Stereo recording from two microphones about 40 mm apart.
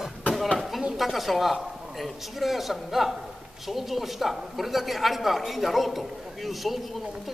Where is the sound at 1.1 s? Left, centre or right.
Centre.